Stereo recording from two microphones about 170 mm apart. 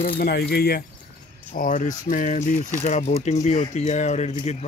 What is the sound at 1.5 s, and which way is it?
Speech, 50° left (ahead or behind).